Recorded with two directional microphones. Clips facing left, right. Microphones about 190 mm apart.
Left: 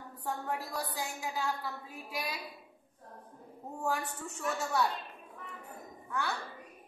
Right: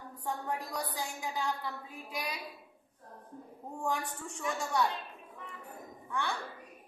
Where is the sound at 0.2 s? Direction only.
5° left (ahead or behind).